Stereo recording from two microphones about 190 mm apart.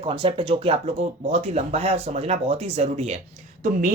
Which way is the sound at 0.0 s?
30° right (ahead or behind).